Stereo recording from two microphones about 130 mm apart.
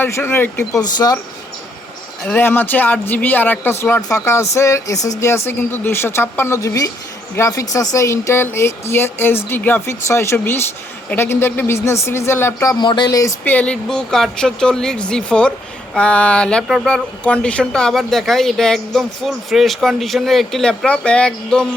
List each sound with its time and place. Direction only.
0.0 s speech: 15° left (ahead or behind)
0.8 s speech: 30° left (ahead or behind)
2.2 s a woman's voice: 15° left (ahead or behind)
12.8 s speech: 35° left (ahead or behind)
13.4 s speech: 10° left (ahead or behind)